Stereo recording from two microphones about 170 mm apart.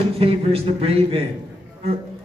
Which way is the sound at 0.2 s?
35° right (ahead or behind).